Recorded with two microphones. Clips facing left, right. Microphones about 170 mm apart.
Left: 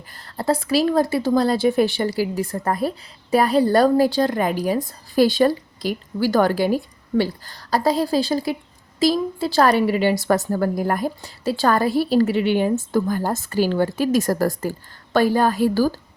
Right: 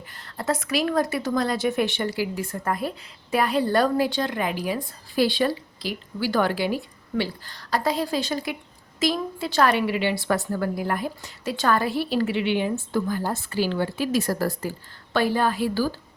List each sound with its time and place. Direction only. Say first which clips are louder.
0.3 s a woman's voice: left 5 dB; 30° left (ahead or behind)